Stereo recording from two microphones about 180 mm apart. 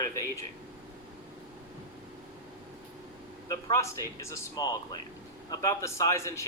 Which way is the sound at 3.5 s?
20° left (ahead or behind).